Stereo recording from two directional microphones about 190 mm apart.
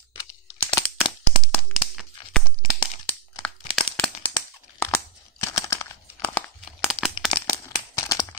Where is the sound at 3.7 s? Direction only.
5° left (ahead or behind).